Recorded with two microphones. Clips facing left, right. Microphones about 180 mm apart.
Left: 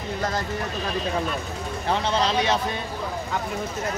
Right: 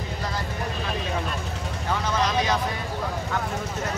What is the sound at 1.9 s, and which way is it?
Vehicle, 30° left (ahead or behind).